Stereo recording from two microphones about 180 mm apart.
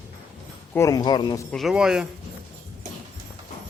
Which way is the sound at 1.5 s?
Centre (ahead or behind).